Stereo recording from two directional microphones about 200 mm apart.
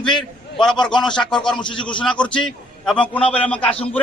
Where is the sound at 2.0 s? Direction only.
5° left (ahead or behind).